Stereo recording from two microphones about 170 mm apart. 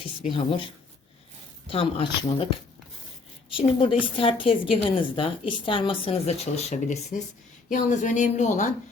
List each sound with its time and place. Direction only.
0.3 s a woman's voice: 30° left (ahead or behind)
3.6 s a woman's voice: 30° left (ahead or behind)